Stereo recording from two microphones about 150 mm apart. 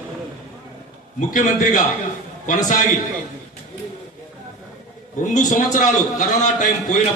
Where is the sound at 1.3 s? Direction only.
65° left (ahead or behind).